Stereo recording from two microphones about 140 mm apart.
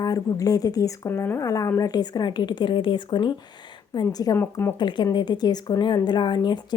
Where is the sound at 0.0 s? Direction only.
25° left (ahead or behind).